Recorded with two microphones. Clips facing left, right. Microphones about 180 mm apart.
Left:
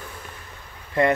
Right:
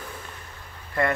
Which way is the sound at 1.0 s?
20° left (ahead or behind).